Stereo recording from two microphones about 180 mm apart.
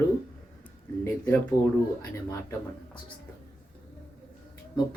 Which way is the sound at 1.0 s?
15° left (ahead or behind).